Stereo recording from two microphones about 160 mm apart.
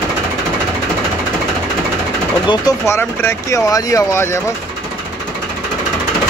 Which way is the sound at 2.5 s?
25° left (ahead or behind).